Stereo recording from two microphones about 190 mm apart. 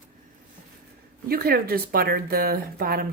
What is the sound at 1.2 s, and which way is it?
Speech, 50° right (ahead or behind).